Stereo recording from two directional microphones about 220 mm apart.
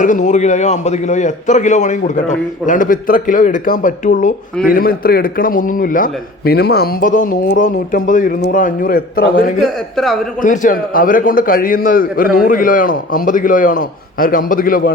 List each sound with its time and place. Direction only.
0.0 s a man's voice: 35° left (ahead or behind)